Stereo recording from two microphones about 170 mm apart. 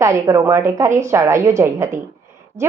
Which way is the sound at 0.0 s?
15° right (ahead or behind).